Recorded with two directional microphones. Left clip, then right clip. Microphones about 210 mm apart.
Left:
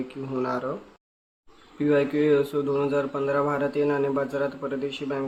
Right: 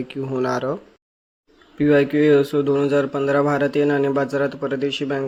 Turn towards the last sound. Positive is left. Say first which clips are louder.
# right 6 dB
turn(degrees=-30)  # may be behind; listen again after turning